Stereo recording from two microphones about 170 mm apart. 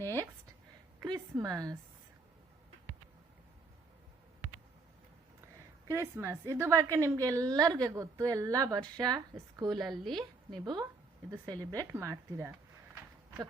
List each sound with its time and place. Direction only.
1.0 s a woman's voice: 20° right (ahead or behind)
5.9 s a woman's voice: 15° right (ahead or behind)
9.8 s a woman's voice: centre (ahead or behind)
10.6 s a woman's voice: 25° right (ahead or behind)